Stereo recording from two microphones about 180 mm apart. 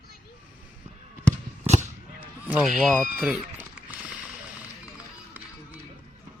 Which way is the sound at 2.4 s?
5° right (ahead or behind).